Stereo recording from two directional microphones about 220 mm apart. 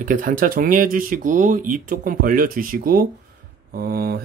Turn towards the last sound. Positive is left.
turn(degrees=-45)  # may be behind; listen again after turning